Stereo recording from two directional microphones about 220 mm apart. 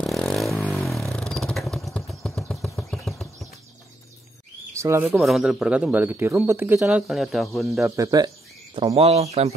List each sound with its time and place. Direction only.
0.0 s a sound: centre (ahead or behind)
0.8 s vehicle: centre (ahead or behind)
4.7 s speech: 10° right (ahead or behind)
7.9 s speech: 15° right (ahead or behind)
8.7 s speech: 25° right (ahead or behind)